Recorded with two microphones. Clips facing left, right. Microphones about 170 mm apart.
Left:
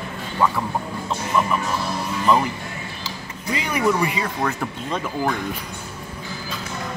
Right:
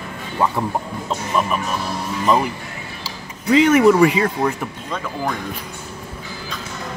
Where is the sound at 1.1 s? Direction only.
15° right (ahead or behind).